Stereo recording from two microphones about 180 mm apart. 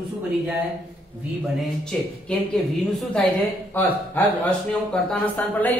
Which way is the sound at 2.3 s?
5° left (ahead or behind).